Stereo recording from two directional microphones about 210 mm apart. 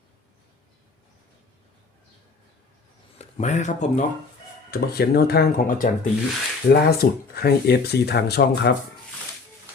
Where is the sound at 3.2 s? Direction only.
30° left (ahead or behind).